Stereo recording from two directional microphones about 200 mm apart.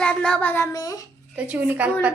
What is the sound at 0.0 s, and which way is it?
Speech, 5° left (ahead or behind).